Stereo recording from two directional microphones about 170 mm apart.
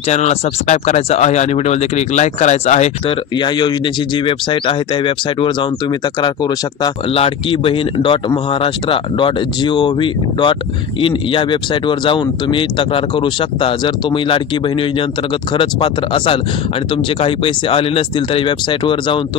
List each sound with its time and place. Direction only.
0.1 s speech: 40° left (ahead or behind)
3.3 s speech: 25° left (ahead or behind)